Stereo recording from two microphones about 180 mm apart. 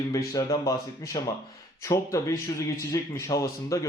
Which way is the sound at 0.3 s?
20° left (ahead or behind).